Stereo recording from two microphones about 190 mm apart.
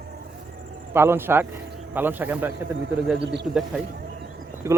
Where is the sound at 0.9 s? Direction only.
10° right (ahead or behind).